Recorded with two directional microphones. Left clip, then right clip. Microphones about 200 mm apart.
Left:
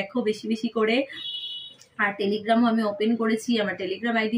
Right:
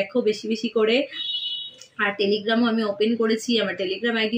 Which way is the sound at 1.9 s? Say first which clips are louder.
Right 3 dB; 20° left (ahead or behind).